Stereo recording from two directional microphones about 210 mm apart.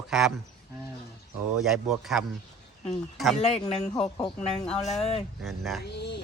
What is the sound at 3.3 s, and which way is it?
Speech, 30° left (ahead or behind).